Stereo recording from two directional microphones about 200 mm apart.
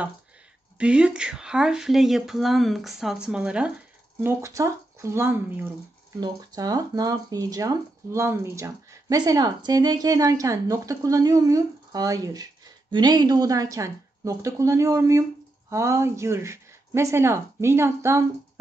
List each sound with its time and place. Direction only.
0.7 s speech: 5° right (ahead or behind)